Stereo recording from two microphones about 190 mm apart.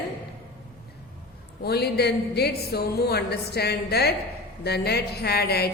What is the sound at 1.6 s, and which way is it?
Speech, 55° left (ahead or behind).